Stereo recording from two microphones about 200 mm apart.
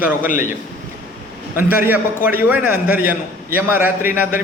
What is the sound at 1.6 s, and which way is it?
A man's voice, 10° right (ahead or behind).